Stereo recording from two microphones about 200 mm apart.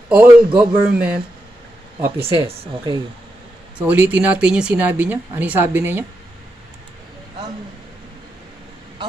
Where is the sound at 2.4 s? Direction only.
25° right (ahead or behind).